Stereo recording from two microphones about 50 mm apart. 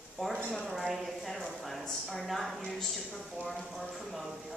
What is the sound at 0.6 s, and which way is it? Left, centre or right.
A woman's voice, centre.